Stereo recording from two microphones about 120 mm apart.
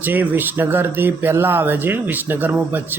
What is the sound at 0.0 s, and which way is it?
Speech, 15° right (ahead or behind).